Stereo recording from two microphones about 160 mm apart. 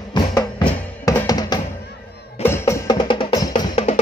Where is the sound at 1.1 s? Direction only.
25° left (ahead or behind).